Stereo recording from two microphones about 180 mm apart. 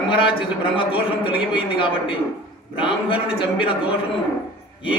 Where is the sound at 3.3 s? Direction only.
30° left (ahead or behind).